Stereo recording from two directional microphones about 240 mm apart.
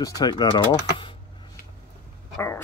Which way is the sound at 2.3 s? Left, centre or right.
Centre.